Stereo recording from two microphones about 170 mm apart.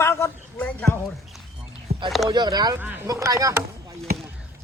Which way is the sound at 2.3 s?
25° right (ahead or behind).